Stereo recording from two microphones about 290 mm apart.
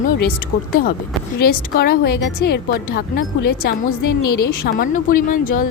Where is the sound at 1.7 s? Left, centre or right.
Left.